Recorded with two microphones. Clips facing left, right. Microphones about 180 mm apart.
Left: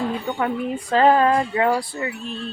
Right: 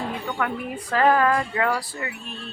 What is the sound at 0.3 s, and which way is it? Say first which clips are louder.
Speech: left 4 dB; 25° left (ahead or behind).